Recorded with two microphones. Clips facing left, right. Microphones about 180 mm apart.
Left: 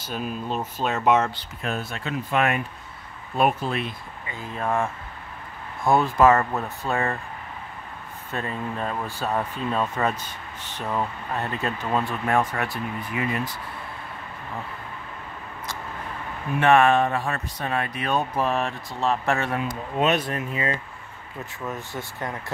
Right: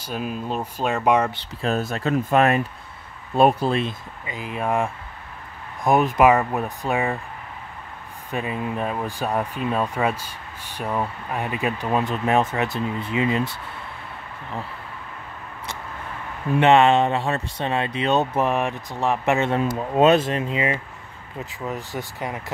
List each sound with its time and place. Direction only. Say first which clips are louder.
0.1 s speech: right 2 dB; 5° right (ahead or behind)
1.3 s speech: right 5 dB; 30° right (ahead or behind)
1.8 s speech: right 7 dB; 40° right (ahead or behind)
4.3 s speech: right 2 dB; 10° right (ahead or behind)
8.3 s speech: right 3 dB; 15° right (ahead or behind)
16.5 s speech: right 2 dB; 25° right (ahead or behind)